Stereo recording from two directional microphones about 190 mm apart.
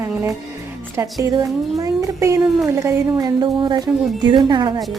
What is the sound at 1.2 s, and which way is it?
Speech, 20° right (ahead or behind).